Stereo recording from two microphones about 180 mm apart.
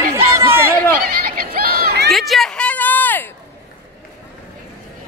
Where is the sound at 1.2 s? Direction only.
55° right (ahead or behind).